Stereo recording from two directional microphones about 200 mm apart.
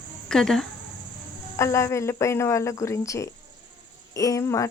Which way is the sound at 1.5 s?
15° left (ahead or behind).